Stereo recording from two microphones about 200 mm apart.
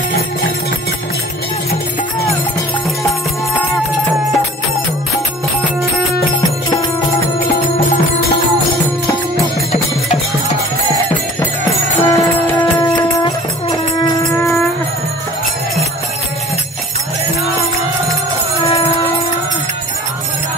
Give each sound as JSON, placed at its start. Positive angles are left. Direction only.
{"t": 12.0, "sound": "music", "side_deg": 15}